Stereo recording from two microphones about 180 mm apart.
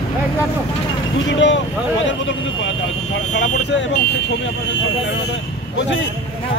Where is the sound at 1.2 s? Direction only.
90° left.